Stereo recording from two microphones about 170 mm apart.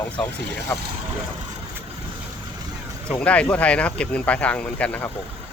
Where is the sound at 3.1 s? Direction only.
5° left (ahead or behind).